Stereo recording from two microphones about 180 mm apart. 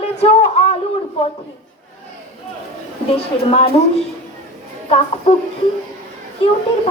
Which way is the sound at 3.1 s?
35° left (ahead or behind).